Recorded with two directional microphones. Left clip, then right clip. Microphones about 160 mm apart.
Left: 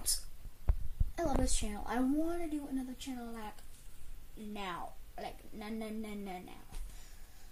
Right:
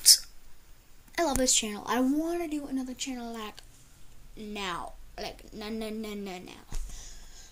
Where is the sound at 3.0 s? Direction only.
15° right (ahead or behind).